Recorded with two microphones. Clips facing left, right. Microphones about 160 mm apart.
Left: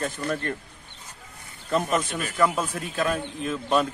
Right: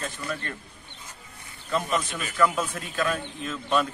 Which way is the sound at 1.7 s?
45° left (ahead or behind).